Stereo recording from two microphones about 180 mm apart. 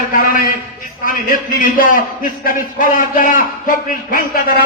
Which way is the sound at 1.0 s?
50° left (ahead or behind).